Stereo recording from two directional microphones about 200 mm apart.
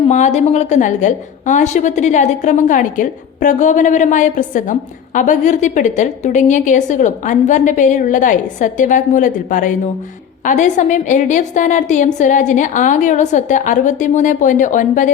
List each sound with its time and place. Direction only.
0.1 s a woman's voice: 35° left (ahead or behind)